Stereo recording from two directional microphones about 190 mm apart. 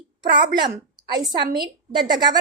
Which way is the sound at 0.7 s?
20° right (ahead or behind).